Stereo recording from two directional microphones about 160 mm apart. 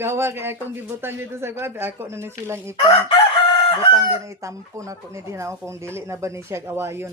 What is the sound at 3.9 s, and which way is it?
Speech, 20° right (ahead or behind).